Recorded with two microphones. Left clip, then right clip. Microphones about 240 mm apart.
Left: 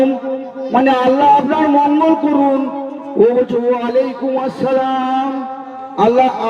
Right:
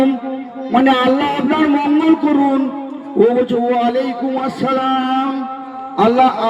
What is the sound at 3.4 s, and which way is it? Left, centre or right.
A man's voice, right.